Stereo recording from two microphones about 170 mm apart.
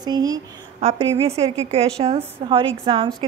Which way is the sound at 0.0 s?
25° right (ahead or behind).